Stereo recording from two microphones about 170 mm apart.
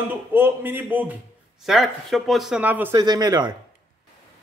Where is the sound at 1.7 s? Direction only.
Centre (ahead or behind); by 3.5 s 25° right (ahead or behind).